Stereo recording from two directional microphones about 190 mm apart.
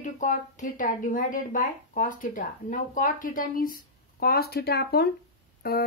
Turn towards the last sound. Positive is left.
turn(degrees=55)  # may be behind; listen again after turning